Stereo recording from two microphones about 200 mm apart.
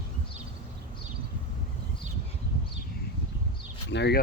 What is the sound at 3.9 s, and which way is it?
Speech, 60° left (ahead or behind).